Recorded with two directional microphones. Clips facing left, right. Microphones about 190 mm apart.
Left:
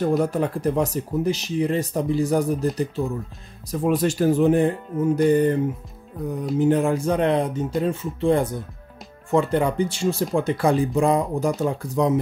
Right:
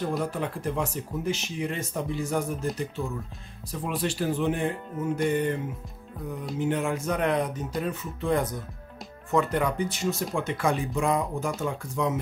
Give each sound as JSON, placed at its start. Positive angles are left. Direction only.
{"t": 0.1, "sound": "speech", "side_deg": 45}
{"t": 6.6, "sound": "speech", "side_deg": 35}